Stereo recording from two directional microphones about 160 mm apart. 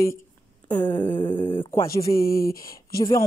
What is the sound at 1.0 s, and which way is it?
Speech, 30° left (ahead or behind).